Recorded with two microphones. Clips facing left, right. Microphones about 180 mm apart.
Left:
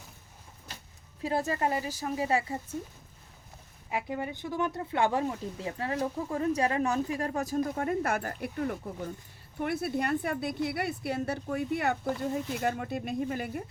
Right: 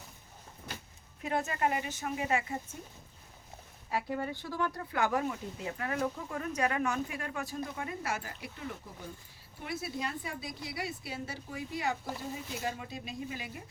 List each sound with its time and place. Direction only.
1.2 s speech: 30° left (ahead or behind)
3.8 s a woman's voice: 15° left (ahead or behind); by 13.6 s 55° left (ahead or behind)